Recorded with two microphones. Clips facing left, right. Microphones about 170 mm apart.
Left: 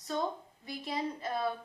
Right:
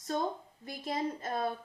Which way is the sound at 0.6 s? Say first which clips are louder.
Right 1 dB; 45° right (ahead or behind).